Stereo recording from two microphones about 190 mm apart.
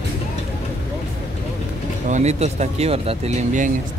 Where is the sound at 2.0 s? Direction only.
40° right (ahead or behind).